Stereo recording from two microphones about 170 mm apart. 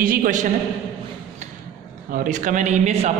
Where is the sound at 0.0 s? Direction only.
55° right (ahead or behind).